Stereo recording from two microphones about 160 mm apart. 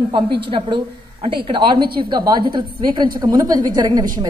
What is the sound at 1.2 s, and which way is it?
A woman's voice, 30° right (ahead or behind).